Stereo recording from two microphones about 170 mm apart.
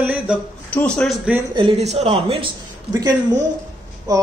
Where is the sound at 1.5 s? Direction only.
30° right (ahead or behind).